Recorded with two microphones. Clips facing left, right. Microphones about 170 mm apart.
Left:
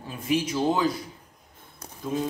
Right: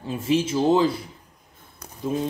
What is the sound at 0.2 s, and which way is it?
Speech, 25° right (ahead or behind).